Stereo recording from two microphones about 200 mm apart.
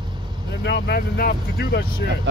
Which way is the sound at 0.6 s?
60° left (ahead or behind).